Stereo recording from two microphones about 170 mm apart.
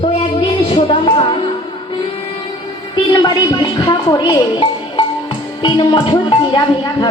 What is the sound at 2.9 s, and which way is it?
A woman's voice, 25° left (ahead or behind).